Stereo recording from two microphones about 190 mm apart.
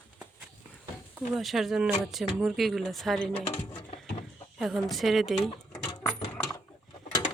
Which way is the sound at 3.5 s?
35° left (ahead or behind).